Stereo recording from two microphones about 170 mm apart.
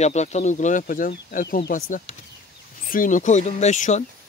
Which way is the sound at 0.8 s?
60° left (ahead or behind).